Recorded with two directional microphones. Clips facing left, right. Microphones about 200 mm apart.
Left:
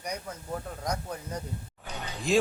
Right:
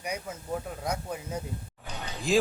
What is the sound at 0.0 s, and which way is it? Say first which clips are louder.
A man's voice: right 1 dB; 5° right (ahead or behind).